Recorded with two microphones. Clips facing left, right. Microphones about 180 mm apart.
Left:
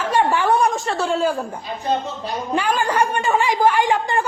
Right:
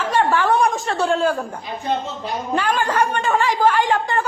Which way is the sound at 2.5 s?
10° left (ahead or behind).